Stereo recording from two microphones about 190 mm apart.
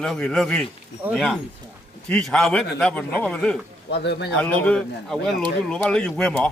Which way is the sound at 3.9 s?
65° left (ahead or behind).